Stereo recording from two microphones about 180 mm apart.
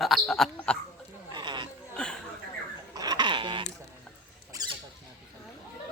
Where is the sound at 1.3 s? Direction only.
25° right (ahead or behind).